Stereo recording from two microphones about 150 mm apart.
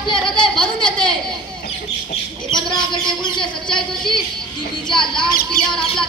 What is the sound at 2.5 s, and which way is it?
Speech, 30° left (ahead or behind).